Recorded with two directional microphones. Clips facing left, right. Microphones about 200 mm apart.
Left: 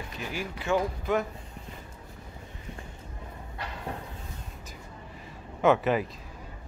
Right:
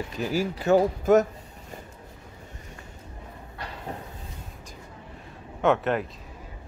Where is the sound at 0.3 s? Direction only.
40° right (ahead or behind).